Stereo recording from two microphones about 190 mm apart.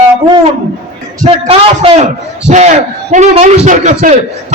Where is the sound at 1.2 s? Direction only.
30° right (ahead or behind).